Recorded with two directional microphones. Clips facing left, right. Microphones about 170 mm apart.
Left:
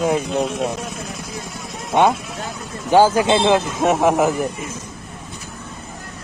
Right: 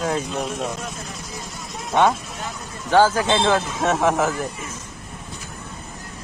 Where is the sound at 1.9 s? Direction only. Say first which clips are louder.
Left 2 dB; 15° left (ahead or behind).